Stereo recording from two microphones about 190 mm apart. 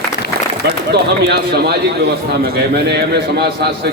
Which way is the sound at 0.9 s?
60° right (ahead or behind).